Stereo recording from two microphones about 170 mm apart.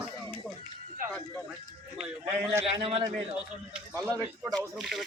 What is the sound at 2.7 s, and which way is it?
Speech, 35° right (ahead or behind).